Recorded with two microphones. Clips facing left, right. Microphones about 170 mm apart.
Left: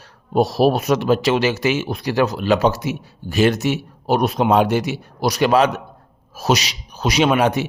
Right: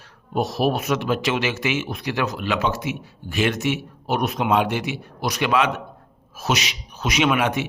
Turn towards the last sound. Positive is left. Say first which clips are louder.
# left 4 dB
turn(degrees=35)  # may be behind; listen again after turning